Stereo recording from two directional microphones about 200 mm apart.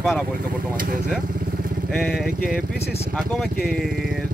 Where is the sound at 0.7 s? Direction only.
45° right (ahead or behind).